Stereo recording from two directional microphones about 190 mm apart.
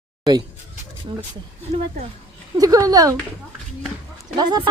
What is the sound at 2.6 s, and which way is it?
Speech, 20° right (ahead or behind).